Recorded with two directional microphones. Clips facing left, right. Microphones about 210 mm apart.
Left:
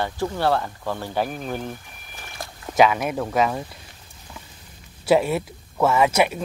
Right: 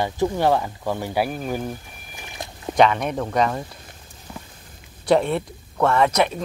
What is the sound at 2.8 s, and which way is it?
Speech, 5° left (ahead or behind).